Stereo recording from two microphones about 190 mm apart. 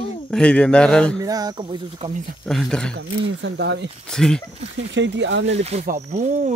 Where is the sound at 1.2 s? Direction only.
20° right (ahead or behind).